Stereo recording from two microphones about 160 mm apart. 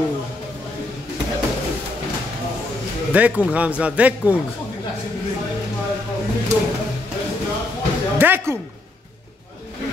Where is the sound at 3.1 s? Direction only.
10° right (ahead or behind).